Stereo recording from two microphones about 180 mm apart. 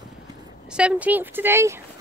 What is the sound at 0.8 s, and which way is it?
Speech, 5° right (ahead or behind).